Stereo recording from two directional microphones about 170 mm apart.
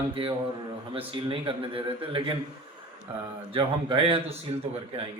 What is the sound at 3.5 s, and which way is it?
Speech, 30° right (ahead or behind).